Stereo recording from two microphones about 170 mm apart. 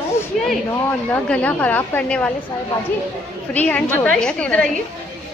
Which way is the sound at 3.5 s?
10° left (ahead or behind).